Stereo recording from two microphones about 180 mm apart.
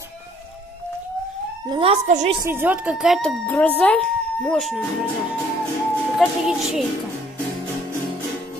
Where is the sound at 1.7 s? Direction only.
30° right (ahead or behind).